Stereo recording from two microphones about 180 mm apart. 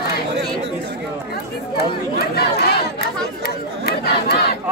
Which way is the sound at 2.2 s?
65° left (ahead or behind).